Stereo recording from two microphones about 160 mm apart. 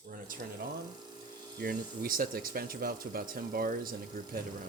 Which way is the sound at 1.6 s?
65° right (ahead or behind).